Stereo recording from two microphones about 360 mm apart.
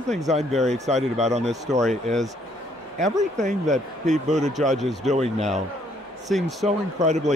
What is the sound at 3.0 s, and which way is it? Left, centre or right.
Speech, centre.